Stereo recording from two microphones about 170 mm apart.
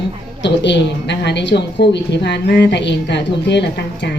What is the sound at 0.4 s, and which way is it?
A woman's voice, 90° left.